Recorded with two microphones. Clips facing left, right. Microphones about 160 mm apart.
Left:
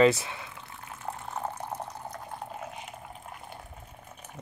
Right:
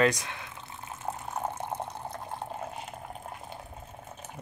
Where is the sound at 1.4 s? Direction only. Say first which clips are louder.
Right 3 dB; 25° right (ahead or behind).